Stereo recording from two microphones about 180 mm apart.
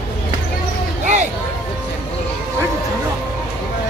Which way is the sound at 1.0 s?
40° right (ahead or behind).